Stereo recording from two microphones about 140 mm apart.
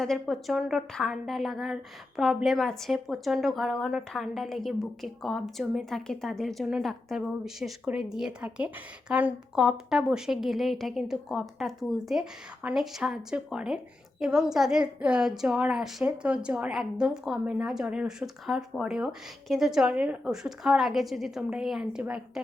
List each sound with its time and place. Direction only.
0.0 s a woman's voice: centre (ahead or behind)